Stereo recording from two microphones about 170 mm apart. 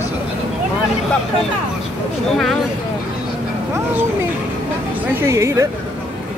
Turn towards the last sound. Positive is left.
turn(degrees=-15)  # may be behind; listen again after turning